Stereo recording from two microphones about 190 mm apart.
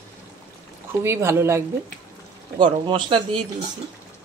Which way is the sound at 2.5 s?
25° right (ahead or behind).